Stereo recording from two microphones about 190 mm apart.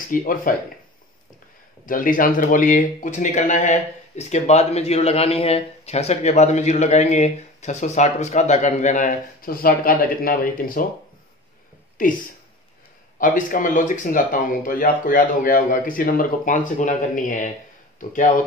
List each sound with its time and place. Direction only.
0.1 s speech: 45° left (ahead or behind)
1.9 s speech: 45° left (ahead or behind)
12.0 s speech: 45° left (ahead or behind)
13.2 s speech: 45° left (ahead or behind)